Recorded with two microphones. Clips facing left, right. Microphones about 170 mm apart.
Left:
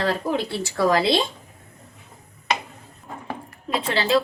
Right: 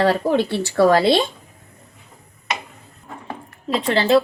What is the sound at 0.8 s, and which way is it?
Speech, 60° right (ahead or behind).